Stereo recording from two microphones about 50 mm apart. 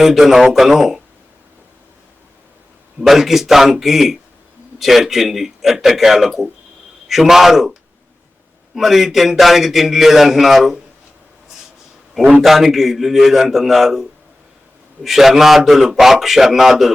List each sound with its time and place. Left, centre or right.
0.0 s a man's voice: centre
3.0 s a man's voice: centre
12.4 s a man's voice: centre